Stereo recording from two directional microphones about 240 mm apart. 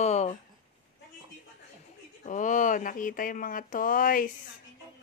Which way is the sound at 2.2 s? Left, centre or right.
Left.